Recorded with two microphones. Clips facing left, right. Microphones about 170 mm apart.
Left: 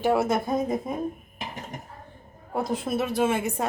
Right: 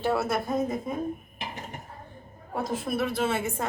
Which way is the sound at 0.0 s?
15° left (ahead or behind).